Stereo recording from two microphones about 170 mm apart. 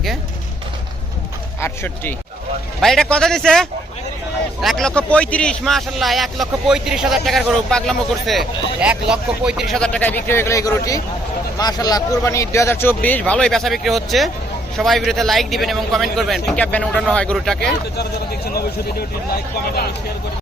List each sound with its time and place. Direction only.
1.6 s speech: 15° left (ahead or behind)
2.8 s a man's voice: 5° left (ahead or behind)
18.5 s speech: 65° left (ahead or behind)